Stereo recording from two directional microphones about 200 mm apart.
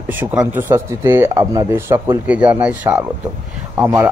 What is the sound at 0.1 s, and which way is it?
Speech, 10° right (ahead or behind).